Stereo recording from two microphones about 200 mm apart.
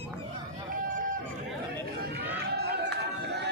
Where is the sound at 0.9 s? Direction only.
40° right (ahead or behind).